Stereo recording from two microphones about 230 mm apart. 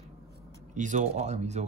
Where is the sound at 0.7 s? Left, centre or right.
Right.